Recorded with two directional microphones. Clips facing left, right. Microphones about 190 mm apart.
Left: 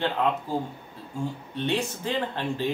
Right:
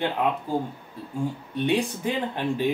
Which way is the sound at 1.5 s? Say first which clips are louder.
Right 4 dB; 15° right (ahead or behind).